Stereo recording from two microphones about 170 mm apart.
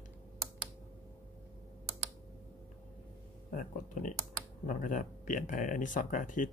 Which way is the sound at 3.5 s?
50° left (ahead or behind).